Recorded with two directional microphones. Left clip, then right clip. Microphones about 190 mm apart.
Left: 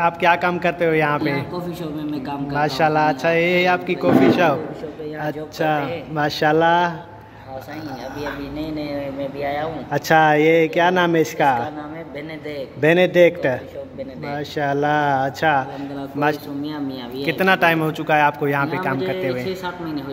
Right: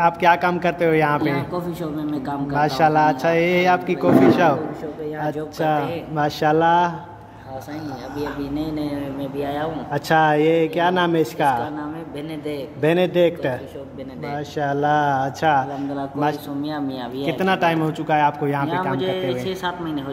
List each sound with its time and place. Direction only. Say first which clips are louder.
0.0 s a man's voice: right 1 dB; centre (ahead or behind)
8.2 s speech: right 3 dB; 60° right (ahead or behind)
9.8 s a man's voice: left 3 dB; 5° left (ahead or behind)
12.8 s a man's voice: left 4 dB; 10° left (ahead or behind)